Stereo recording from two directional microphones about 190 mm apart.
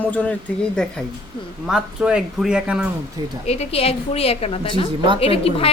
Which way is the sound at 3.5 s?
35° left (ahead or behind).